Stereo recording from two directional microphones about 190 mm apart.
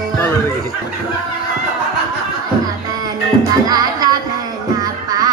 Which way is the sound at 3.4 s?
20° right (ahead or behind).